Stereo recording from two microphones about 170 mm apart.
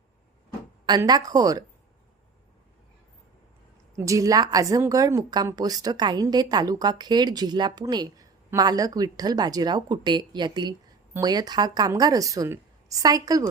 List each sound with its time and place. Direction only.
0.9 s a woman's voice: 25° right (ahead or behind)
3.9 s a woman's voice: 20° right (ahead or behind)